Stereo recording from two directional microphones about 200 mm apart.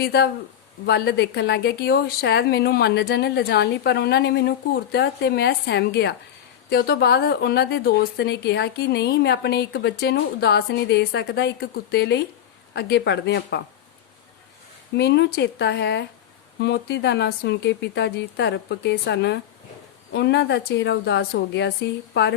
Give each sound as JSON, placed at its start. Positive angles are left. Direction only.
{"t": 0.0, "sound": "speech", "side_deg": 55}
{"t": 14.9, "sound": "speech", "side_deg": 60}